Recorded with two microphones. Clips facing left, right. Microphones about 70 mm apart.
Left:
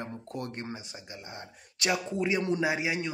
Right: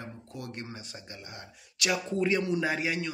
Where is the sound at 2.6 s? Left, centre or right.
Centre.